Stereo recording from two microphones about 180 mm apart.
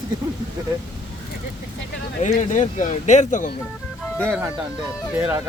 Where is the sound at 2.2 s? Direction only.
45° left (ahead or behind).